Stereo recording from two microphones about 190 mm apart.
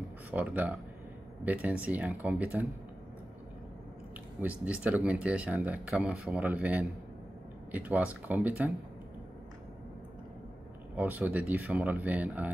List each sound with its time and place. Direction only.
0.3 s speech: 10° right (ahead or behind)
4.4 s speech: 5° right (ahead or behind)
11.0 s speech: 10° right (ahead or behind)